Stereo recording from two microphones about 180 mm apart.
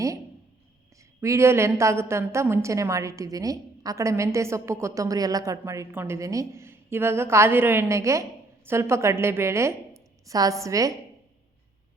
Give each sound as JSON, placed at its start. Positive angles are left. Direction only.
{"t": 1.2, "sound": "a woman's voice", "side_deg": -15}